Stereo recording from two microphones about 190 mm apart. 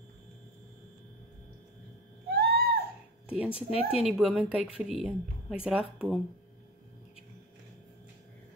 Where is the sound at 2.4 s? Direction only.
55° right (ahead or behind).